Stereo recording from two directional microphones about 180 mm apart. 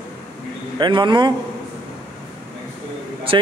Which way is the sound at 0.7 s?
25° right (ahead or behind).